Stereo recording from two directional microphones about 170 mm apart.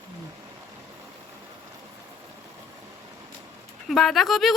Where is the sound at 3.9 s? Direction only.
Centre (ahead or behind).